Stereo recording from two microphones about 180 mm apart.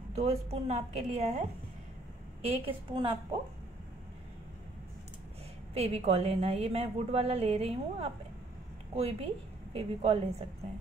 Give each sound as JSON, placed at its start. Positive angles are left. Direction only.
{"t": 0.1, "sound": "a woman's voice", "side_deg": -35}
{"t": 2.4, "sound": "a woman's voice", "side_deg": -30}
{"t": 5.8, "sound": "a woman's voice", "side_deg": -35}